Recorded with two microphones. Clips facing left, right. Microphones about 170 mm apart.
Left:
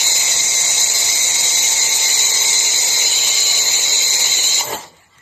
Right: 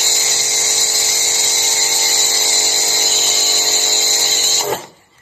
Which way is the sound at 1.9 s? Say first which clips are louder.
Right 6 dB; 20° right (ahead or behind).